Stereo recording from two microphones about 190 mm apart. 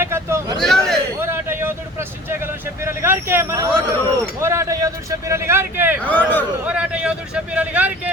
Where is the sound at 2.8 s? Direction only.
10° right (ahead or behind).